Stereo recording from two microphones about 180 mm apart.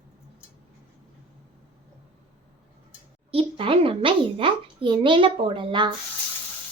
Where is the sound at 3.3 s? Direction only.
30° right (ahead or behind).